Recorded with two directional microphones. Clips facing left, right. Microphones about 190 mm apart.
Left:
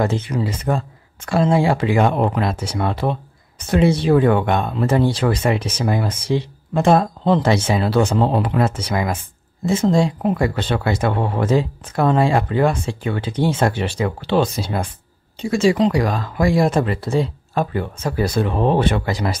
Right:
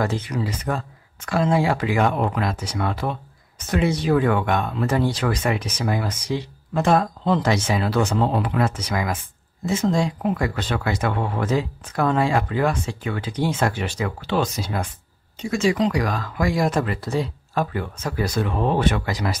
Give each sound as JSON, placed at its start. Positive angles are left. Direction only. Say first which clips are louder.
{"t": 0.0, "sound": "speech", "louder": "left 4 dB", "side_deg": 25}